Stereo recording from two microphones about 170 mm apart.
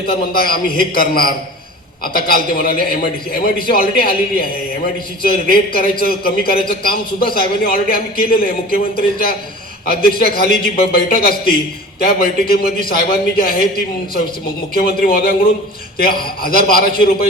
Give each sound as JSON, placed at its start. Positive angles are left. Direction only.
{"t": 0.1, "sound": "a man's voice", "side_deg": 60}
{"t": 5.5, "sound": "a man's voice", "side_deg": 60}
{"t": 14.7, "sound": "a man's voice", "side_deg": 60}